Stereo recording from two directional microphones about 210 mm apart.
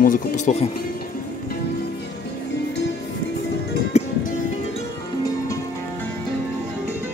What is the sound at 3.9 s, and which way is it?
Music, 30° left (ahead or behind).